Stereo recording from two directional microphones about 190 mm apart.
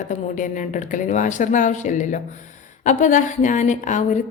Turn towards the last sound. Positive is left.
turn(degrees=40)  # may be behind; listen again after turning